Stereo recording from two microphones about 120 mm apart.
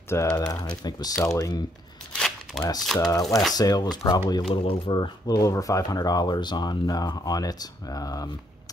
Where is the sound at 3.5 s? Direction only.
35° left (ahead or behind).